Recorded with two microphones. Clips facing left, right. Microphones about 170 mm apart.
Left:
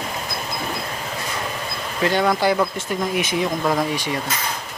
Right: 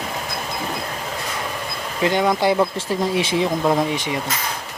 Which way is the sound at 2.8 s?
30° right (ahead or behind).